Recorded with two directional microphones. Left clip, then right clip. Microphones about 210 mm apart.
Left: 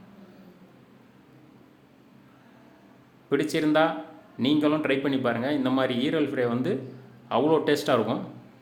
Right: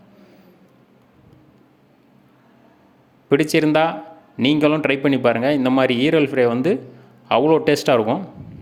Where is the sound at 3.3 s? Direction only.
35° right (ahead or behind).